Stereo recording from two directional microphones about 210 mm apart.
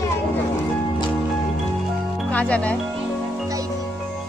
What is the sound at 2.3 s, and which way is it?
Speech, 5° left (ahead or behind).